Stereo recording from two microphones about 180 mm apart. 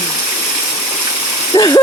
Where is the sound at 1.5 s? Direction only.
20° left (ahead or behind).